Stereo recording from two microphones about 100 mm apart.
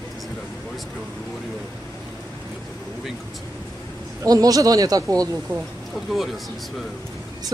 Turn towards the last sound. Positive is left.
turn(degrees=0)  # may be behind; listen again after turning